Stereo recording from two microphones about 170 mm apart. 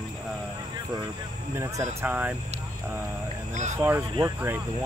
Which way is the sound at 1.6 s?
15° right (ahead or behind).